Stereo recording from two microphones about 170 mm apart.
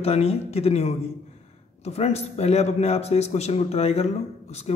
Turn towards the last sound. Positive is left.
turn(degrees=40)  # may be behind; listen again after turning